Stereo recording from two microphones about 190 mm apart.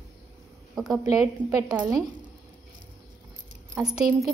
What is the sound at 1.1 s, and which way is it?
Speech, 20° right (ahead or behind).